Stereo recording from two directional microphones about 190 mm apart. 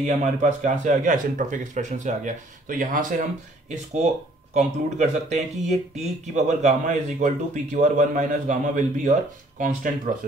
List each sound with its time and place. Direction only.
0.0 s speech: 40° right (ahead or behind)